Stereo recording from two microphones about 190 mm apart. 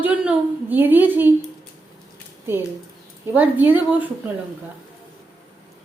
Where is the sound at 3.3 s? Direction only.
10° right (ahead or behind).